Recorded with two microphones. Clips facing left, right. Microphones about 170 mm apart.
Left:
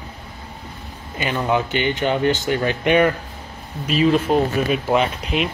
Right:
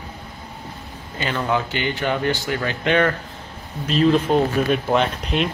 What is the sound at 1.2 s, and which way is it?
Speech, 15° left (ahead or behind).